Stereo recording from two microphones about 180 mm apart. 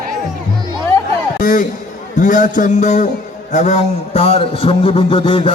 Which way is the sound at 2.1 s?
45° left (ahead or behind).